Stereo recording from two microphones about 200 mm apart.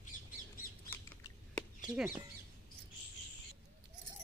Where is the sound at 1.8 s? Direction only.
Centre (ahead or behind).